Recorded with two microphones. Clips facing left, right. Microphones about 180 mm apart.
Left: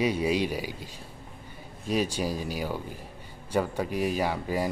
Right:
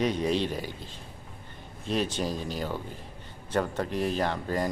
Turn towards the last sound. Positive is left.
turn(degrees=10)  # may be behind; listen again after turning